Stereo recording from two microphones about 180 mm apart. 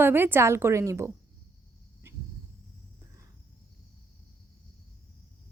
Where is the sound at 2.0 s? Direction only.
15° right (ahead or behind).